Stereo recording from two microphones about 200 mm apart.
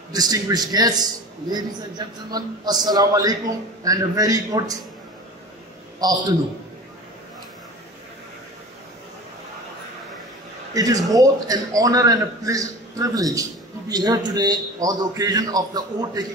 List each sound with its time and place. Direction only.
0.1 s a man's voice: 20° right (ahead or behind)
10.7 s a man's voice: 20° right (ahead or behind)